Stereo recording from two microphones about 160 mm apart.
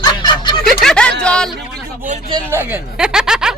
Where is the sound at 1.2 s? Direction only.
5° left (ahead or behind).